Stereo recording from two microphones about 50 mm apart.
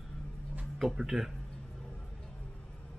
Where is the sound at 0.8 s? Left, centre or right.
Centre.